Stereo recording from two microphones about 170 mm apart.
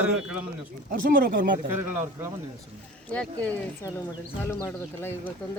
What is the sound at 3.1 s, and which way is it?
Speech, 10° left (ahead or behind).